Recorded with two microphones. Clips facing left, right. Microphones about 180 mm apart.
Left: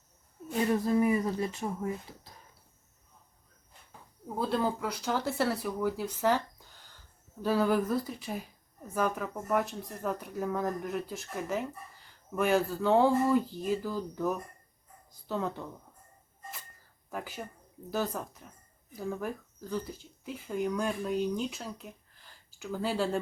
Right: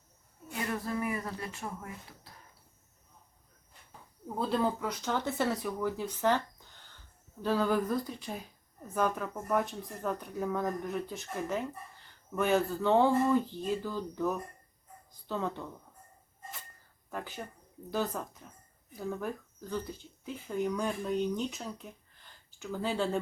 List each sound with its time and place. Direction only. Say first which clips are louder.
0.7 s speech: left 8 dB; 25° left (ahead or behind)
4.3 s speech: even; centre (ahead or behind)
17.1 s speech: left 1 dB; 5° left (ahead or behind)